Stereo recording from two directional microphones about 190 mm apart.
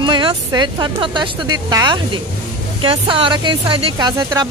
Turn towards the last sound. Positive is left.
turn(degrees=-20)  # may be behind; listen again after turning